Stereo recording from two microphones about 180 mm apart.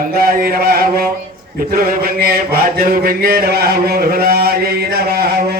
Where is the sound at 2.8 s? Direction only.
55° right (ahead or behind).